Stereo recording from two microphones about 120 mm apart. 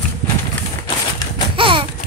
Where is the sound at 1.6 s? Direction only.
45° right (ahead or behind).